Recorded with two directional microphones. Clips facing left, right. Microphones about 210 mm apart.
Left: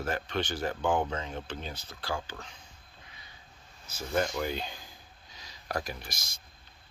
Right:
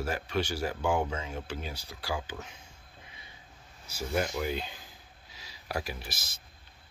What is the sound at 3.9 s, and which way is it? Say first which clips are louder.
Speech: left 1 dB; 10° right (ahead or behind).